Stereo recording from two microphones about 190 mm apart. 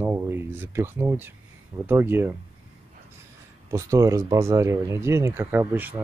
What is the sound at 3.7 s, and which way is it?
Speech, 15° right (ahead or behind).